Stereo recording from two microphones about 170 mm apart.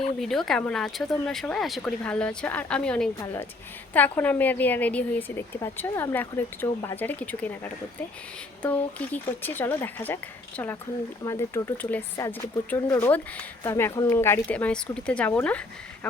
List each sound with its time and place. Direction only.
0.2 s speech: centre (ahead or behind)
11.2 s speech: 15° left (ahead or behind)